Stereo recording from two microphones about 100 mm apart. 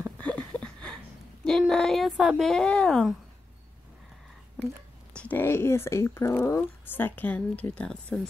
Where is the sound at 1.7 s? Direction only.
5° left (ahead or behind).